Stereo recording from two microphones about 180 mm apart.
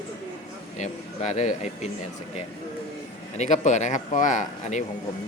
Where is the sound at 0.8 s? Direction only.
40° left (ahead or behind).